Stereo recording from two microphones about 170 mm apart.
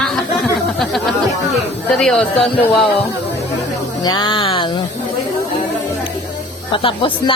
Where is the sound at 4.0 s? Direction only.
25° left (ahead or behind).